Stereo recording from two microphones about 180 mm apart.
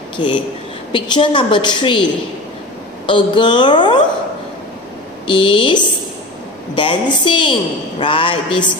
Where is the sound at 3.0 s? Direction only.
25° left (ahead or behind).